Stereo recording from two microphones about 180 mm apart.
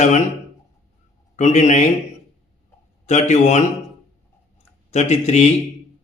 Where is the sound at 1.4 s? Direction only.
40° left (ahead or behind).